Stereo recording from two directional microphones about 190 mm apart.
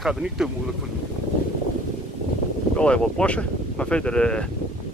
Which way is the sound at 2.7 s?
5° left (ahead or behind).